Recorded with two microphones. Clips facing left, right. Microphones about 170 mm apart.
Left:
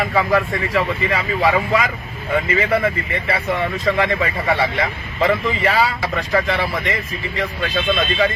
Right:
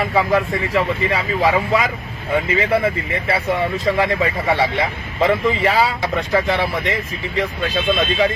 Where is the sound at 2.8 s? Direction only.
25° right (ahead or behind).